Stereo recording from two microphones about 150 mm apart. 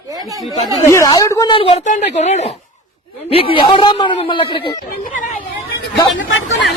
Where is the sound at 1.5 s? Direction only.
40° left (ahead or behind).